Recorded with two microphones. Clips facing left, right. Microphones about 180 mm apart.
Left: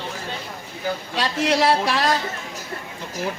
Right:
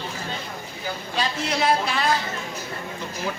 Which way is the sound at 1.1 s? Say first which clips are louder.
Left 4 dB; 80° left.